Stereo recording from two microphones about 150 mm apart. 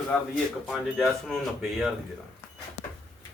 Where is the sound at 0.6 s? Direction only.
Centre (ahead or behind).